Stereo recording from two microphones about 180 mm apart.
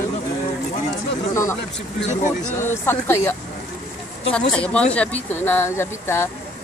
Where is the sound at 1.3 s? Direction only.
15° left (ahead or behind).